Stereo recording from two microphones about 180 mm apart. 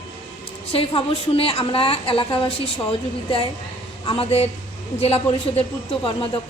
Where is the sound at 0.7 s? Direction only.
30° left (ahead or behind).